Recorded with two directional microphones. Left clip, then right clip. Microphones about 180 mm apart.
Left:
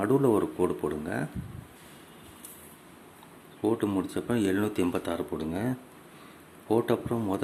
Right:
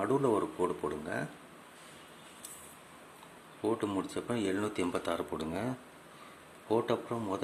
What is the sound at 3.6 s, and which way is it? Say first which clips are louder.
Speech: left 5 dB; 10° left (ahead or behind).